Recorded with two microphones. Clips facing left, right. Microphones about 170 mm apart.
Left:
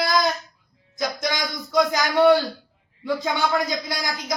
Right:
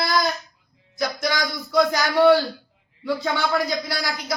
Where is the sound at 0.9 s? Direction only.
20° left (ahead or behind).